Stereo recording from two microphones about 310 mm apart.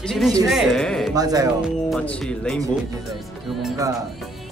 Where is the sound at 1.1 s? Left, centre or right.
Centre.